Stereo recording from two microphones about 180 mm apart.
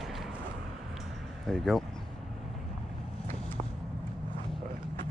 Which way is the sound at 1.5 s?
Centre (ahead or behind).